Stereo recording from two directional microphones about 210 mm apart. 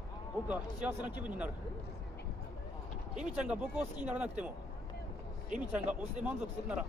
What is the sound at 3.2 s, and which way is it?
Speech, 5° right (ahead or behind).